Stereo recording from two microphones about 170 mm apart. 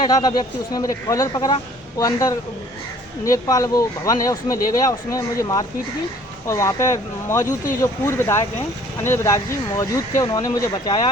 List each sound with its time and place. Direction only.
0.0 s speech: 25° left (ahead or behind)